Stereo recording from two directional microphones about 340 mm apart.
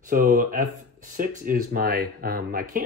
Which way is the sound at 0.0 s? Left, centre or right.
Right.